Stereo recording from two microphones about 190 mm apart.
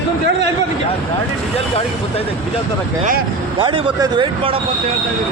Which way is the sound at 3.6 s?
25° right (ahead or behind).